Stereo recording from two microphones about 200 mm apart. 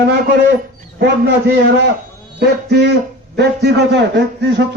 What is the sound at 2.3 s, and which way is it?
A man's voice, 55° right (ahead or behind).